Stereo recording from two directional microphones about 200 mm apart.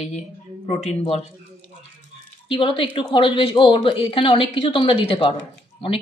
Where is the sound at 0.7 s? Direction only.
30° left (ahead or behind).